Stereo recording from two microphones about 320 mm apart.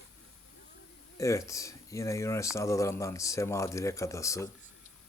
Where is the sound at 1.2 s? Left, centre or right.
Centre.